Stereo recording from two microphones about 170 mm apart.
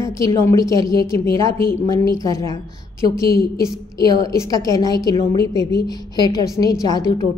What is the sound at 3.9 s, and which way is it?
A woman's voice, 20° left (ahead or behind).